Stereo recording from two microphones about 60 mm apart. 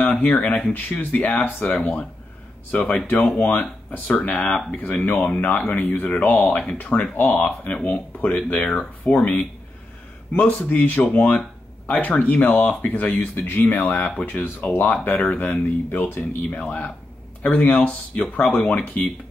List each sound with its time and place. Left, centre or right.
0.0 s speech: left
1.8 s speech: centre